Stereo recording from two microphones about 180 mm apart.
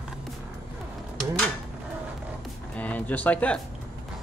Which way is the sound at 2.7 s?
10° left (ahead or behind).